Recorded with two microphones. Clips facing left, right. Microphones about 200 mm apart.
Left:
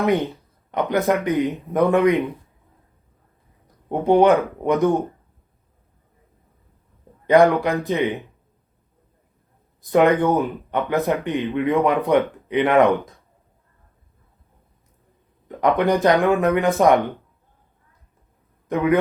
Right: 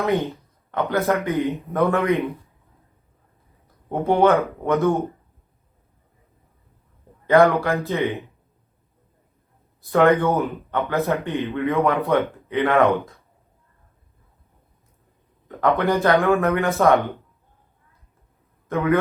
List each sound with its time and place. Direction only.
0.7 s speech: 15° left (ahead or behind)
3.8 s speech: 15° left (ahead or behind)
7.3 s speech: 15° left (ahead or behind)
9.9 s speech: 15° left (ahead or behind)
15.4 s speech: 15° left (ahead or behind)
18.7 s speech: 15° left (ahead or behind)